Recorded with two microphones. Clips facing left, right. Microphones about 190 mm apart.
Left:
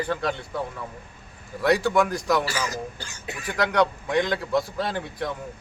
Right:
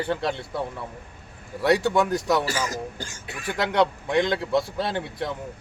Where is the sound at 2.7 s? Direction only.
45° right (ahead or behind).